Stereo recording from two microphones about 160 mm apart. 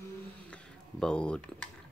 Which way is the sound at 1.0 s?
5° left (ahead or behind).